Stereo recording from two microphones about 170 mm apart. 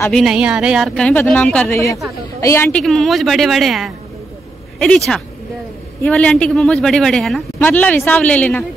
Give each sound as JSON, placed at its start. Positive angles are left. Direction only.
{"t": 0.1, "sound": "speech", "side_deg": 0}
{"t": 1.7, "sound": "a woman's voice", "side_deg": 20}
{"t": 2.8, "sound": "speech", "side_deg": 0}